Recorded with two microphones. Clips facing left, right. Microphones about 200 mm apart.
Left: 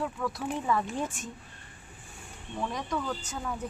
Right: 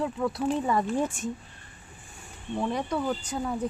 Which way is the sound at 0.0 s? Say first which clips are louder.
Right 5 dB; 25° right (ahead or behind).